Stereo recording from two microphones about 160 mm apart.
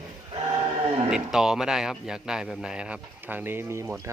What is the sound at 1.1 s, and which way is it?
A man's voice, 5° right (ahead or behind).